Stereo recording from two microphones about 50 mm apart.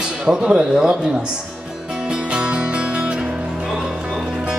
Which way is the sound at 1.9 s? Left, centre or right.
Centre.